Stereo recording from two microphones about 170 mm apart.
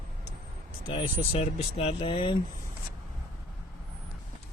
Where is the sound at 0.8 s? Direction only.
30° left (ahead or behind).